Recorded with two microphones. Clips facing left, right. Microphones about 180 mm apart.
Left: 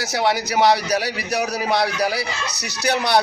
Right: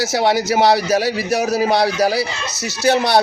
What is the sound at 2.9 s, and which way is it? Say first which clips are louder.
Speech: right 4 dB; 25° right (ahead or behind).